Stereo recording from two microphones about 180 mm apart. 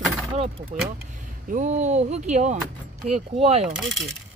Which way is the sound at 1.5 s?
40° right (ahead or behind).